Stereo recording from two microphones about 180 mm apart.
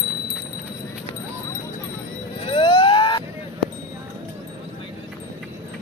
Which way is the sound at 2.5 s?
25° left (ahead or behind).